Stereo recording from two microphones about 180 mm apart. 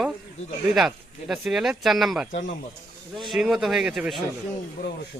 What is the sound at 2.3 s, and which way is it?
Speech, 50° left (ahead or behind).